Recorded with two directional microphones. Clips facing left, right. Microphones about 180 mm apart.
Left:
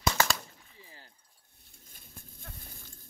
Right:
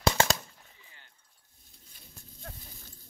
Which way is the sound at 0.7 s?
35° left (ahead or behind).